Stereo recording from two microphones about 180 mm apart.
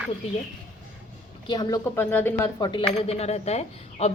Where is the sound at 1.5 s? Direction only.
20° left (ahead or behind).